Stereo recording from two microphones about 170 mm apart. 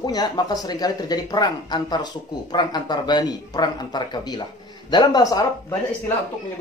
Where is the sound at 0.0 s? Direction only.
25° left (ahead or behind).